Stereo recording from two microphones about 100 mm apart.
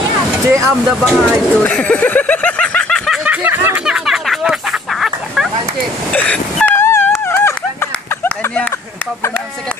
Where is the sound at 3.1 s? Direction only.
10° right (ahead or behind).